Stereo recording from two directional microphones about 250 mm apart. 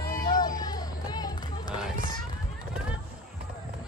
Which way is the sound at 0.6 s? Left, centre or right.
Centre.